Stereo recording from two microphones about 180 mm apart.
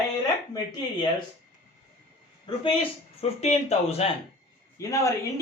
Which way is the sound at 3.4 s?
35° left (ahead or behind).